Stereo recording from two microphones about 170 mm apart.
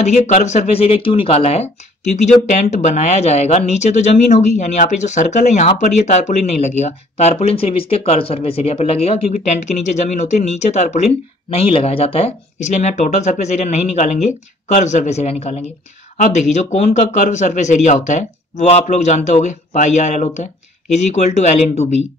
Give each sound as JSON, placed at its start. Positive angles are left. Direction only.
{"t": 0.0, "sound": "speech", "side_deg": 45}